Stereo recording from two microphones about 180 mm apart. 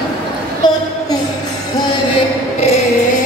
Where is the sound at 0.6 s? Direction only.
25° left (ahead or behind).